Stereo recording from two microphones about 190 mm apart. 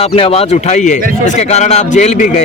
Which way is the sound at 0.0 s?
30° left (ahead or behind).